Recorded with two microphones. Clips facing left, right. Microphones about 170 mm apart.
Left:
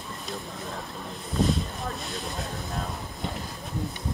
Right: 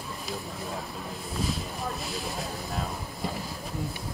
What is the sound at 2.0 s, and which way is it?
Speech, centre (ahead or behind).